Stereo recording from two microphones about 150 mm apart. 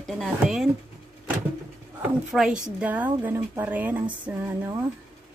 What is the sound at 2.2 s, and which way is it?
Speech, 5° right (ahead or behind).